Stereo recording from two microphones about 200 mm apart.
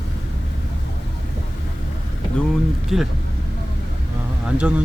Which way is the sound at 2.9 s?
Centre (ahead or behind).